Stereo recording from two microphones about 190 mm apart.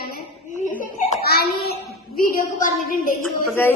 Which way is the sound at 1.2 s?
55° left (ahead or behind).